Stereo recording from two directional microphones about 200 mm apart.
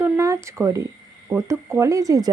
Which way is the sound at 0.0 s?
15° right (ahead or behind).